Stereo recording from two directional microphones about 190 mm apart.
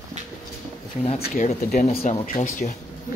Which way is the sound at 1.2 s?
45° left (ahead or behind).